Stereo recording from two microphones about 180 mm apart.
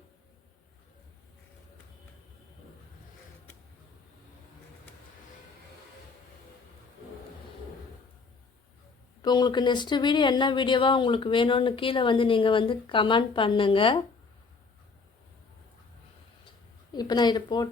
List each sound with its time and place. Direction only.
9.2 s speech: 25° left (ahead or behind)
16.9 s speech: 25° left (ahead or behind)